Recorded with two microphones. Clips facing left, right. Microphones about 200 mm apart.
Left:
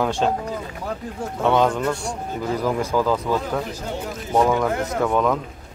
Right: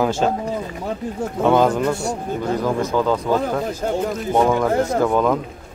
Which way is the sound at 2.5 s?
10° left (ahead or behind).